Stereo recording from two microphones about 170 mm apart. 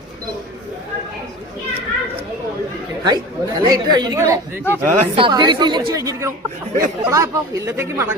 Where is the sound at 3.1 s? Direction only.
25° right (ahead or behind).